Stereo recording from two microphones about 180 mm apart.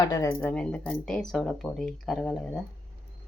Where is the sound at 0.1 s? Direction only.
15° left (ahead or behind).